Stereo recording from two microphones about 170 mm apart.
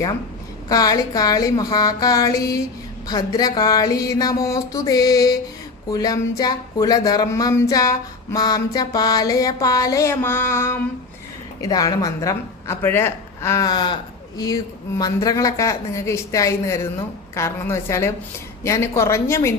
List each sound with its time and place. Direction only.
0.7 s a woman's voice: 20° left (ahead or behind)